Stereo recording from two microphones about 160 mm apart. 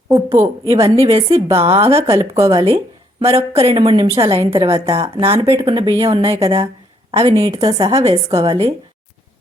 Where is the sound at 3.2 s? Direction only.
40° right (ahead or behind).